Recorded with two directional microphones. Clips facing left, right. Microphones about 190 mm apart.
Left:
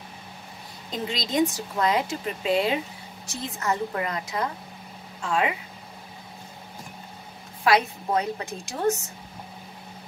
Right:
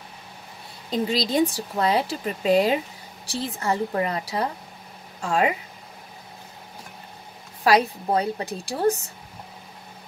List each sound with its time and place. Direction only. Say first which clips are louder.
1.1 s speech: right 1 dB; 35° right (ahead or behind)
7.6 s speech: right 2 dB; 35° right (ahead or behind)